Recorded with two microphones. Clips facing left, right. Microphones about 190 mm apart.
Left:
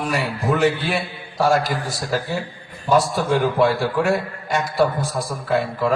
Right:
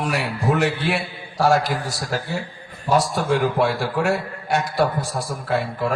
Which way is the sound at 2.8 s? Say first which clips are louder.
Left 2 dB; 70° right (ahead or behind).